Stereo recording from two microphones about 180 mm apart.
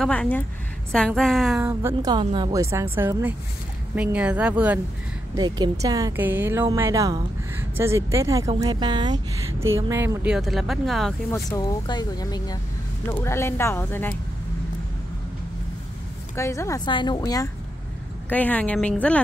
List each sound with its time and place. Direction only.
0.0 s speech: 5° left (ahead or behind)
1.6 s a woman's voice: 15° right (ahead or behind)
5.3 s a woman's voice: 20° right (ahead or behind); by 11.1 s centre (ahead or behind)
11.3 s speech: 20° left (ahead or behind)
16.3 s speech: 15° left (ahead or behind)
18.3 s speech: 10° left (ahead or behind)